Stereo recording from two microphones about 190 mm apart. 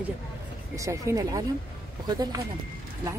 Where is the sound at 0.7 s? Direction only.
15° right (ahead or behind).